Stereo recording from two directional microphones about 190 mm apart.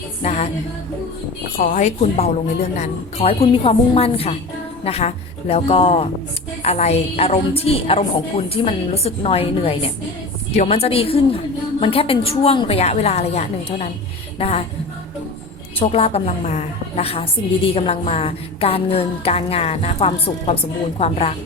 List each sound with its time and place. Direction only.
0.2 s music: 35° left (ahead or behind)
1.5 s a woman's voice: 45° left (ahead or behind)
14.3 s music: 30° left (ahead or behind)
15.8 s a woman's voice: 30° left (ahead or behind)